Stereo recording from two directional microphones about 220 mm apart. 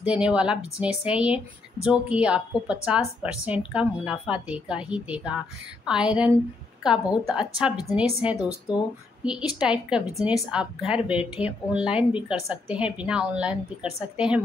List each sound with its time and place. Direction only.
0.0 s speech: 5° right (ahead or behind)